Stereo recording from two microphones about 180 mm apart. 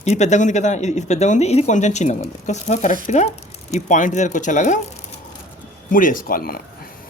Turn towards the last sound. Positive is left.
turn(degrees=55)  # may be behind; listen again after turning